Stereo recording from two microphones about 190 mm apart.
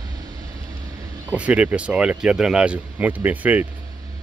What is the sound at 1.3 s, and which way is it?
Speech, 5° right (ahead or behind).